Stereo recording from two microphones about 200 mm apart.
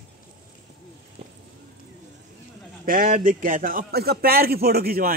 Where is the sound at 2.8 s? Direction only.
45° right (ahead or behind).